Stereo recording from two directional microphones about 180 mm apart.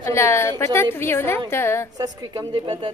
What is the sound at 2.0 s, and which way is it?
Speech, 20° right (ahead or behind).